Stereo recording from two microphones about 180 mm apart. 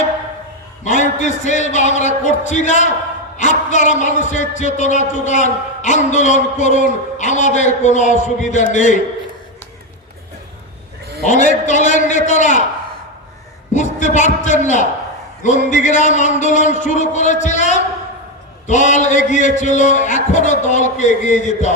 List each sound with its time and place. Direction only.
0.9 s a man's voice: 40° left (ahead or behind)
11.3 s a man's voice: 45° left (ahead or behind)
13.7 s a man's voice: 40° left (ahead or behind)